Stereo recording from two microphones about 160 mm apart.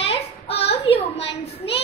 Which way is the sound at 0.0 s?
40° left (ahead or behind).